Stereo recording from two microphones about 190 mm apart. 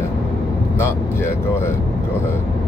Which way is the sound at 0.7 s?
15° left (ahead or behind).